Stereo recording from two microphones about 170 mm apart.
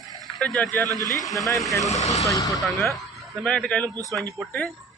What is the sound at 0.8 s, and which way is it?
Speech, 20° right (ahead or behind).